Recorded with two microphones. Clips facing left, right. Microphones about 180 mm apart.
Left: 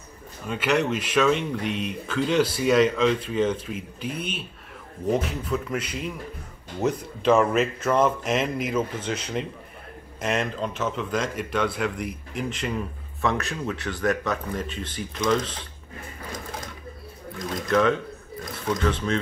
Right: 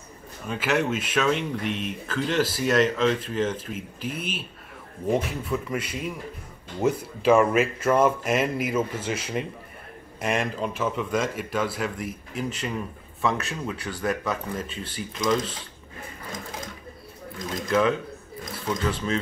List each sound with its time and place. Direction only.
0.5 s speech: centre (ahead or behind)
17.6 s speech: 5° right (ahead or behind)